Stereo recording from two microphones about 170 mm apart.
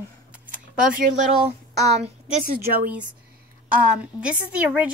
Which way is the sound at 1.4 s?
40° right (ahead or behind).